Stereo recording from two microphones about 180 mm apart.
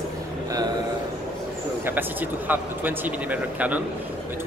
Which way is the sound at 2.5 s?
10° right (ahead or behind).